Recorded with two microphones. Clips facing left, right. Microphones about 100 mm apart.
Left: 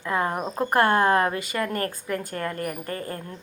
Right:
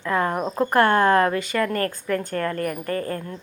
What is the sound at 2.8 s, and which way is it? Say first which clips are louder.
Speech: right 6 dB; 40° right (ahead or behind).